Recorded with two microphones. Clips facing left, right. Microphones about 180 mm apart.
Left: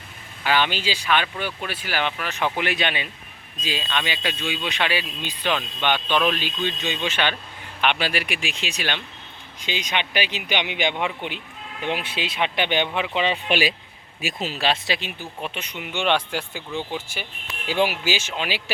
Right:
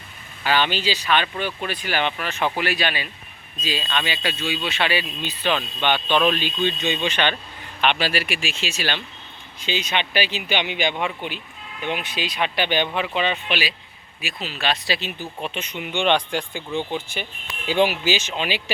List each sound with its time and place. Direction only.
0.4 s speech: 10° left (ahead or behind)
2.6 s speech: 20° left (ahead or behind)
13.5 s speech: 45° left (ahead or behind)
14.7 s speech: 15° left (ahead or behind)